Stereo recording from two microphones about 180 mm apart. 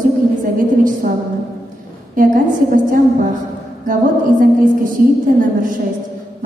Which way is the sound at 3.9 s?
50° right (ahead or behind).